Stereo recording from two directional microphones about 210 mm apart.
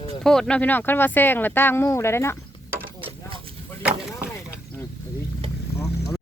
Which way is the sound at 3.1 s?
25° right (ahead or behind).